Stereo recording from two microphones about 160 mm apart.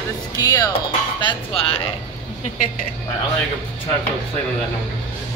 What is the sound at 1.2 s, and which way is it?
Speech, 35° left (ahead or behind).